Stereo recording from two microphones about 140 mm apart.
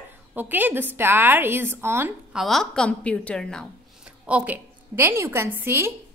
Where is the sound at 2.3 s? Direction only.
Centre (ahead or behind).